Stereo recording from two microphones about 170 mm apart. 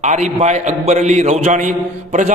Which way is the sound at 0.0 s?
45° right (ahead or behind).